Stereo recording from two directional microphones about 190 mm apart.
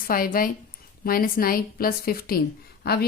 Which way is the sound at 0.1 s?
50° left (ahead or behind).